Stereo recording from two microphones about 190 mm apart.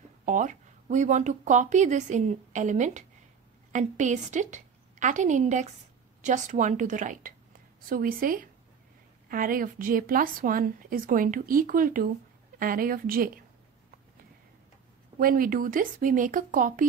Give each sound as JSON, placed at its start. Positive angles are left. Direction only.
{"t": 0.2, "sound": "a woman's voice", "side_deg": -40}
{"t": 15.1, "sound": "speech", "side_deg": -50}